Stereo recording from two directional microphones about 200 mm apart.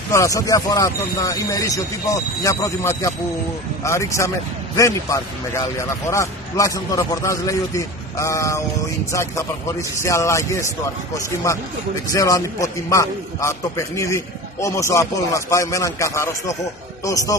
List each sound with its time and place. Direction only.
0.1 s a man's voice: 15° left (ahead or behind)
12.1 s a man's voice: 15° left (ahead or behind)